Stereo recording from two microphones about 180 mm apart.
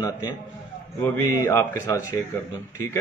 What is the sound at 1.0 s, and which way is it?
Speech, 15° left (ahead or behind).